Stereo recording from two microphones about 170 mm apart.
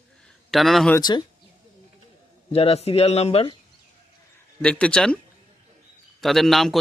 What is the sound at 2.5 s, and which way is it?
Speech, 35° left (ahead or behind).